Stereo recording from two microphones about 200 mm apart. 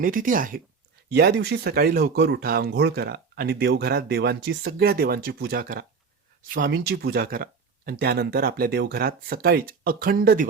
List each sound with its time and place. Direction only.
0.0 s speech: 40° right (ahead or behind)
1.1 s speech: 55° right (ahead or behind)